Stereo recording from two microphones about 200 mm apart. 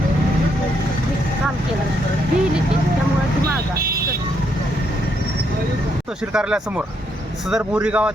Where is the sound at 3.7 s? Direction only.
50° right (ahead or behind).